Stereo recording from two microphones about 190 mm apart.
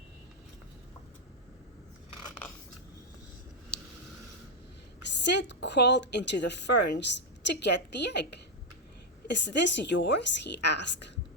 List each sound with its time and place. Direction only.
5.3 s a woman's voice: 65° left (ahead or behind)